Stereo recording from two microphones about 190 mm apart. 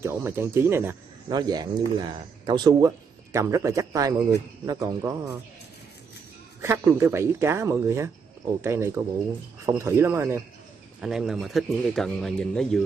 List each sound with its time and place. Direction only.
0.0 s a man's voice: 10° right (ahead or behind)
6.6 s a man's voice: 15° right (ahead or behind)
11.0 s speech: centre (ahead or behind)